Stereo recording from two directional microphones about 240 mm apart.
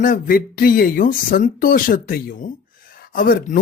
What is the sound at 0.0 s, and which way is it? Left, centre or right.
Speech, left.